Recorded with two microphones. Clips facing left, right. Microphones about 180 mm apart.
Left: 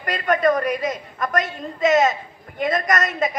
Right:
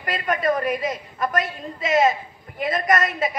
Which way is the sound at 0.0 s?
45° left (ahead or behind).